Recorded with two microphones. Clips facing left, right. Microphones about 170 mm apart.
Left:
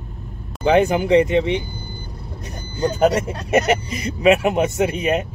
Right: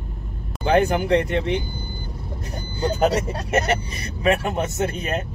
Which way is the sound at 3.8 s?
90° left.